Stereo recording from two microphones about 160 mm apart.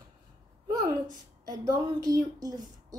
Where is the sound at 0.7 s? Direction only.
25° right (ahead or behind).